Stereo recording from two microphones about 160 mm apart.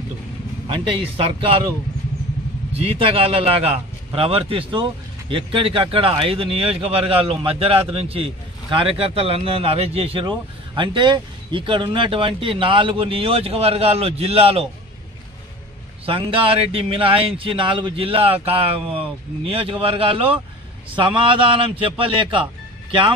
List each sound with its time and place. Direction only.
0.7 s a man's voice: 30° right (ahead or behind)
2.7 s a man's voice: 35° right (ahead or behind)
16.1 s a man's voice: 35° right (ahead or behind)